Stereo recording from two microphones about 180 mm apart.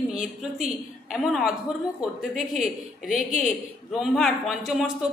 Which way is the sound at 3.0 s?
45° left (ahead or behind).